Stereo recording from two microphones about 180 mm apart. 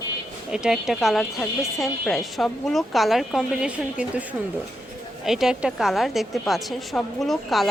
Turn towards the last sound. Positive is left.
turn(degrees=0)  # may be behind; listen again after turning